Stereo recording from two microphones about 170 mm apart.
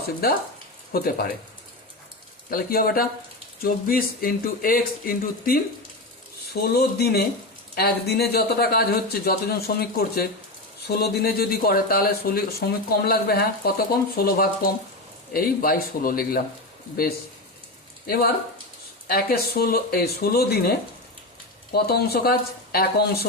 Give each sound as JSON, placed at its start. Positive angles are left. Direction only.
{"t": 0.2, "sound": "speech", "side_deg": 65}
{"t": 2.5, "sound": "speech", "side_deg": 60}
{"t": 6.5, "sound": "speech", "side_deg": 70}
{"t": 18.0, "sound": "speech", "side_deg": 65}
{"t": 21.7, "sound": "speech", "side_deg": 70}